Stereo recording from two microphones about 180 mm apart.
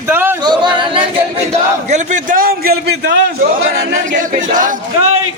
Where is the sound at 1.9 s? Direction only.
50° right (ahead or behind).